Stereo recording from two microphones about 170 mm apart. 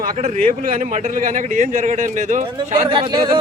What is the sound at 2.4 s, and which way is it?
Speech, 30° right (ahead or behind).